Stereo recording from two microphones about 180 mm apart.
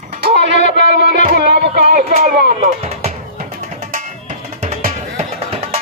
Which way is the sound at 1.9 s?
45° right (ahead or behind).